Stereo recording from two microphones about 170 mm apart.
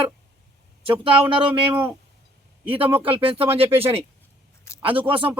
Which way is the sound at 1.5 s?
10° right (ahead or behind).